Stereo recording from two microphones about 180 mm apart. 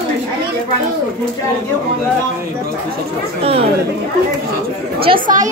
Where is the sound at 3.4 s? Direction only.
35° right (ahead or behind).